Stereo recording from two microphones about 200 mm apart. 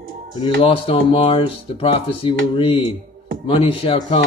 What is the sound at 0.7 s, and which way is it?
Speech, 25° left (ahead or behind).